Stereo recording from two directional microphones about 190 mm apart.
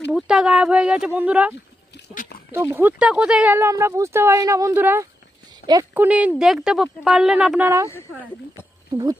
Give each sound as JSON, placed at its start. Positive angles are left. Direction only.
{"t": 0.1, "sound": "speech", "side_deg": -5}
{"t": 2.7, "sound": "speech", "side_deg": -5}
{"t": 6.0, "sound": "speech", "side_deg": -5}